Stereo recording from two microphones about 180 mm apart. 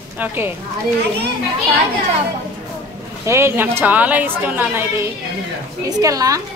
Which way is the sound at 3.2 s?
15° right (ahead or behind).